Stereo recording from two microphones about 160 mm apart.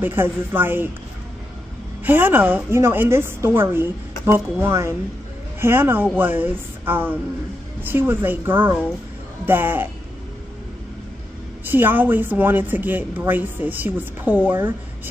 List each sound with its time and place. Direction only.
0.0 s speech: 15° right (ahead or behind)
2.0 s speech: 10° right (ahead or behind)
11.6 s speech: 15° right (ahead or behind)